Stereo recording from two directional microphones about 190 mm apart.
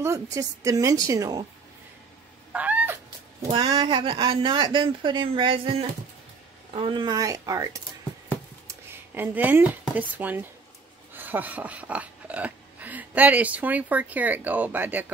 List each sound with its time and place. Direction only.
0.0 s a woman's voice: 15° right (ahead or behind)
2.5 s cat: 10° right (ahead or behind)
3.4 s speech: 25° right (ahead or behind)